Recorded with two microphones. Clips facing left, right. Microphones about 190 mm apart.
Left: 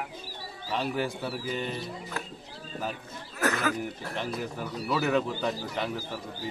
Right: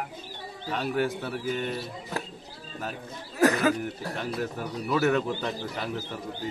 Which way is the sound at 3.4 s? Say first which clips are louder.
Right 6 dB; 30° right (ahead or behind).